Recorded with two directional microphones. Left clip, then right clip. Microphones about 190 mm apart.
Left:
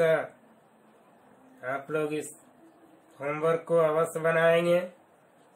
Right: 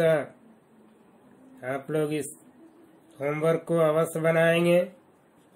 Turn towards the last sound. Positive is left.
turn(degrees=-35)  # may be behind; listen again after turning